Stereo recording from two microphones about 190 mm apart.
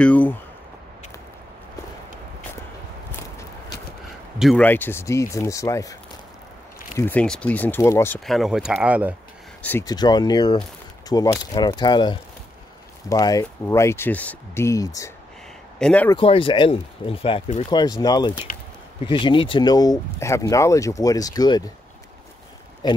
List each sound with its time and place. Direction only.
0.0 s a sound: 10° left (ahead or behind)
3.1 s a sound: 15° left (ahead or behind)
4.4 s speech: centre (ahead or behind)
4.6 s speech: 10° left (ahead or behind)
7.0 s speech: 10° left (ahead or behind)
8.3 s speech: centre (ahead or behind)
9.6 s speech: 10° left (ahead or behind)
9.8 s speech: 20° left (ahead or behind)
15.8 s speech: 5° left (ahead or behind)
16.1 s speech: 25° left (ahead or behind)
17.6 s speech: 25° left (ahead or behind)